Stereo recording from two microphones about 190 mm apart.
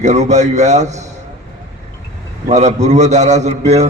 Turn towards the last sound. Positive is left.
turn(degrees=-35)  # may be behind; listen again after turning